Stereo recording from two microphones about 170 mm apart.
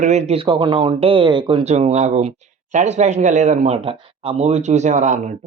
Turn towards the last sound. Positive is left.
turn(degrees=-45)  # may be behind; listen again after turning